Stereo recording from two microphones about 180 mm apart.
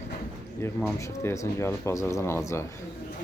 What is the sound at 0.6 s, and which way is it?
A man's voice, 15° left (ahead or behind).